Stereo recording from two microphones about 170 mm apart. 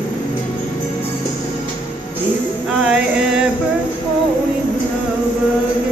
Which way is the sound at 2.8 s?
5° right (ahead or behind).